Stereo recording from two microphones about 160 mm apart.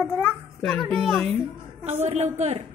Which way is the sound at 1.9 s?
40° right (ahead or behind).